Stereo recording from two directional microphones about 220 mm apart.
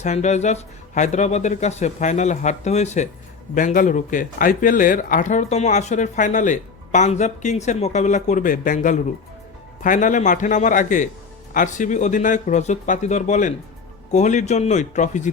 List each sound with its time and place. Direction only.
0.0 s speech: 30° left (ahead or behind)